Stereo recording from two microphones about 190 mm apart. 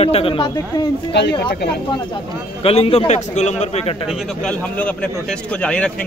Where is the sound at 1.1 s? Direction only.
65° left (ahead or behind).